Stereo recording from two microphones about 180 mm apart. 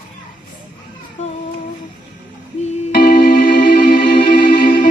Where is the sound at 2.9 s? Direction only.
55° left (ahead or behind).